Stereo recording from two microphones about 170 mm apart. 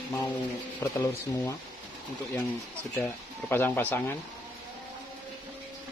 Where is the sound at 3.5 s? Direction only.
10° left (ahead or behind).